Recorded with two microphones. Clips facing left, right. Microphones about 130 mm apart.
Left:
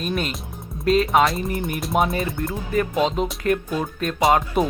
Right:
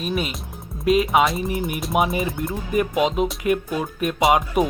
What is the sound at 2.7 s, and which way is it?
Speech, 15° right (ahead or behind).